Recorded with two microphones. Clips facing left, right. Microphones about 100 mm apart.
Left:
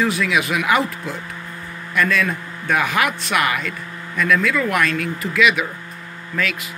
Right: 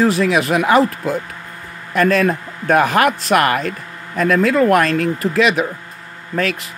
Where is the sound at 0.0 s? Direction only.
40° right (ahead or behind).